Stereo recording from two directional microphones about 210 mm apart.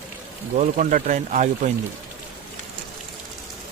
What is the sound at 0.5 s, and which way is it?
Speech, 35° right (ahead or behind).